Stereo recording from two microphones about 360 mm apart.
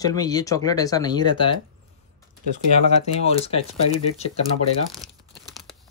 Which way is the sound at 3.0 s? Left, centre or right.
Centre.